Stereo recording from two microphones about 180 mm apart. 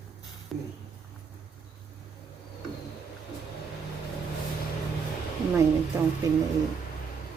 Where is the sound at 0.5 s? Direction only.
Centre (ahead or behind).